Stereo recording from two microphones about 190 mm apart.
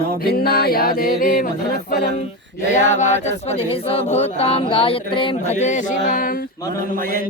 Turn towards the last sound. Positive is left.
turn(degrees=-50)  # may be behind; listen again after turning